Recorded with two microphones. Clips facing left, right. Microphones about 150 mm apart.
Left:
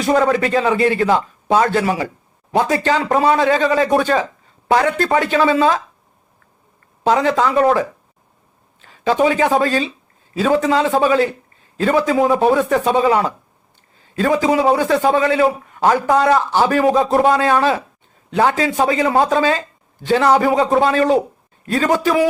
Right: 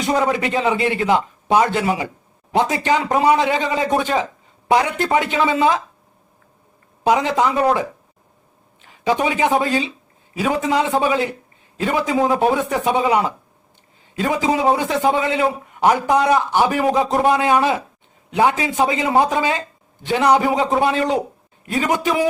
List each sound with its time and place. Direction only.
0.0 s speech: 20° right (ahead or behind)
7.1 s a man's voice: 15° right (ahead or behind)
8.8 s a man's voice: 20° right (ahead or behind)